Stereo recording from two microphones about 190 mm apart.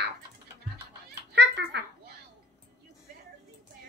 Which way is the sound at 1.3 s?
60° right (ahead or behind).